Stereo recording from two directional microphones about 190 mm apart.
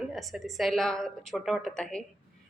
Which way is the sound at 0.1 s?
Centre (ahead or behind).